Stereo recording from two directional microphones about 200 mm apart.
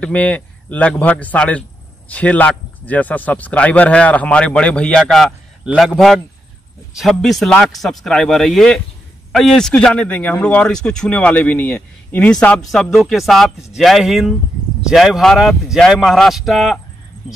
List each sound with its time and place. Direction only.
0.0 s a man's voice: 5° left (ahead or behind)